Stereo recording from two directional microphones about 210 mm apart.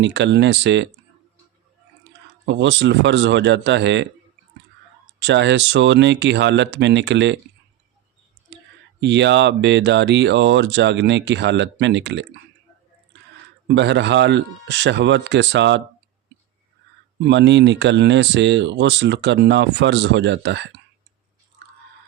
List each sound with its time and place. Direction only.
0.0 s speech: 55° right (ahead or behind)
2.5 s speech: 55° right (ahead or behind)
5.2 s speech: 55° right (ahead or behind)
9.0 s speech: 55° right (ahead or behind)
13.7 s speech: 55° right (ahead or behind)
17.2 s speech: 55° right (ahead or behind)